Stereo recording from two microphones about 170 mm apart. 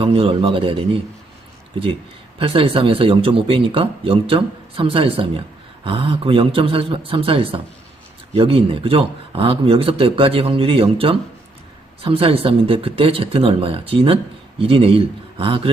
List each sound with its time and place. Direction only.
0.0 s speech: 30° right (ahead or behind)
2.4 s speech: 35° right (ahead or behind)